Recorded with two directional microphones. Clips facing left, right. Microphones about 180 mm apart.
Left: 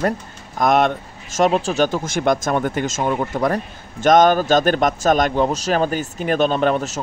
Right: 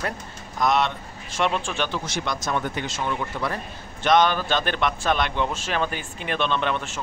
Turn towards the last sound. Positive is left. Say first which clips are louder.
# left 7 dB
turn(degrees=40)  # may be behind; listen again after turning